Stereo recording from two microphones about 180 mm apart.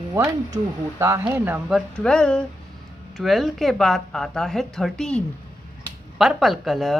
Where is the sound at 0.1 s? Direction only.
15° right (ahead or behind).